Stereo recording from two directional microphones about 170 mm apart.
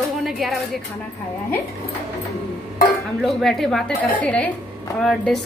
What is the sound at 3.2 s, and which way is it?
A woman's voice, centre (ahead or behind).